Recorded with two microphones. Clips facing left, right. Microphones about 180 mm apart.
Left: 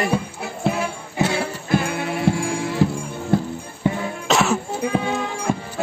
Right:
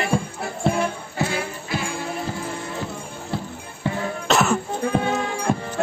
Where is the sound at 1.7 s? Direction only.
60° left (ahead or behind); by 2.8 s 85° left.